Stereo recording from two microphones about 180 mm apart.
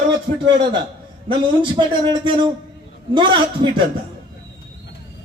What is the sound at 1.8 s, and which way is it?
A man's voice, 25° right (ahead or behind).